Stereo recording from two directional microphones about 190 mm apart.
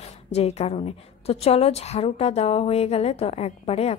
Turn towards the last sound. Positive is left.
turn(degrees=35)  # may be behind; listen again after turning